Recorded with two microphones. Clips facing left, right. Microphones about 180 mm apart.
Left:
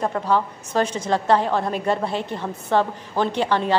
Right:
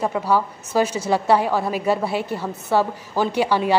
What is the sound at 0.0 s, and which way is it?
A woman's voice, 5° right (ahead or behind).